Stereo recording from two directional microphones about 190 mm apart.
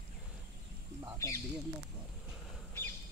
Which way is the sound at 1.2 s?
15° left (ahead or behind).